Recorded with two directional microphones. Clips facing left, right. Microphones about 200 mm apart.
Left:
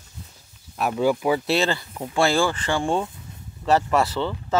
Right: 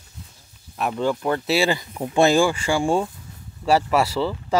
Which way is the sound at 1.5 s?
10° right (ahead or behind).